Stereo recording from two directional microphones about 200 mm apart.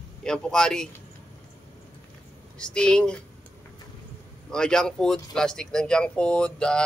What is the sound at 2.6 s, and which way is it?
Speech, 5° left (ahead or behind).